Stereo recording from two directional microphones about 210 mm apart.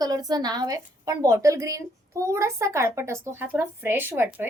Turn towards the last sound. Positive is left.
turn(degrees=-10)  # may be behind; listen again after turning